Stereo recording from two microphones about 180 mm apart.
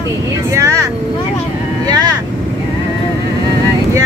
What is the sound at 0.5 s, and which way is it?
Speech, 15° right (ahead or behind).